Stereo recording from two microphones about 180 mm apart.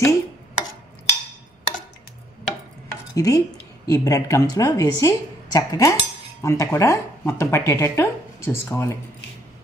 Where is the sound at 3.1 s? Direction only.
20° left (ahead or behind).